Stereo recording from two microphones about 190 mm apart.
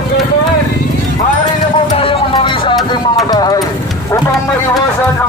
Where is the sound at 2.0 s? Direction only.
25° left (ahead or behind).